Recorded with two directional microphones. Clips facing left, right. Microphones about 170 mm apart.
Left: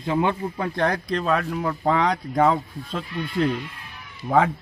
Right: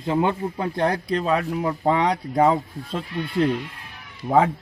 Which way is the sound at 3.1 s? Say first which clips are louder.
Right 2 dB; 30° right (ahead or behind).